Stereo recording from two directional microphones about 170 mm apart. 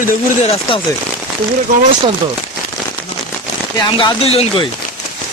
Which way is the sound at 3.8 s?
25° left (ahead or behind).